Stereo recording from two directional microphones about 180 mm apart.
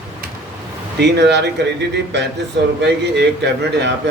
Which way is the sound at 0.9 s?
75° right (ahead or behind).